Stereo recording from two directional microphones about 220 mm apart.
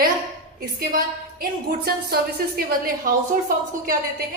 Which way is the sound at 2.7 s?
40° right (ahead or behind).